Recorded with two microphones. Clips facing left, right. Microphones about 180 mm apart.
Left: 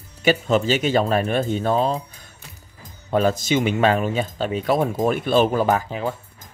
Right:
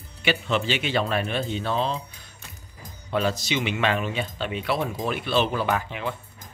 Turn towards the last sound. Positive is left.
turn(degrees=40)  # may be behind; listen again after turning